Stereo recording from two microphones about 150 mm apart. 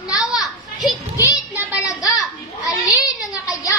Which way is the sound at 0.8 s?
20° left (ahead or behind).